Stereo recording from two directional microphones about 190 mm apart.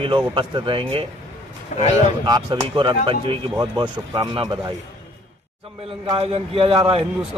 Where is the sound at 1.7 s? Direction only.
40° left (ahead or behind).